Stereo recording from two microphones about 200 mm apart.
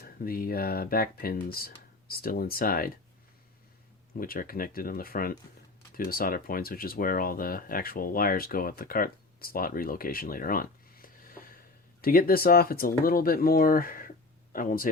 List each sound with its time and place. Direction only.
0.0 s speech: 50° left (ahead or behind)
4.2 s speech: 45° left (ahead or behind)